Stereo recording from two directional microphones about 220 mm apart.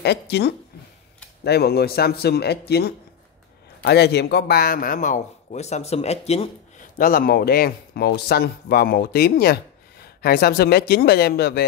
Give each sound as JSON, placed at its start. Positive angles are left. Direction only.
{"t": 0.0, "sound": "a man's voice", "side_deg": 50}
{"t": 7.0, "sound": "speech", "side_deg": 40}